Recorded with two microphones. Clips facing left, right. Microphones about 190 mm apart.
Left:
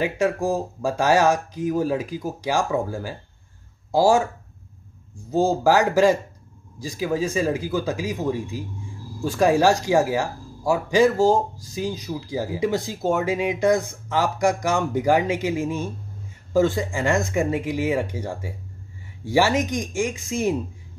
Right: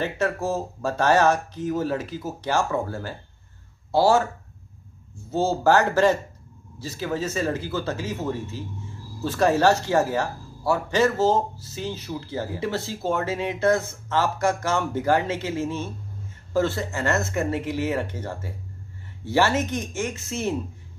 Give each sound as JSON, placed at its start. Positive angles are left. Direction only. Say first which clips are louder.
{"t": 0.0, "sound": "speech", "louder": "left 3 dB", "side_deg": 10}
{"t": 5.3, "sound": "speech", "louder": "left 2 dB", "side_deg": 15}